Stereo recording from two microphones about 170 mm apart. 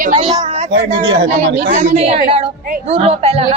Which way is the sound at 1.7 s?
50° right (ahead or behind).